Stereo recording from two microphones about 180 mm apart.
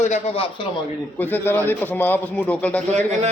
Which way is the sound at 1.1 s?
10° left (ahead or behind).